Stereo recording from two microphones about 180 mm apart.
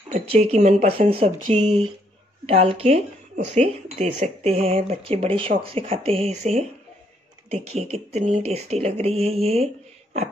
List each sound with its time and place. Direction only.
0.1 s speech: 35° right (ahead or behind)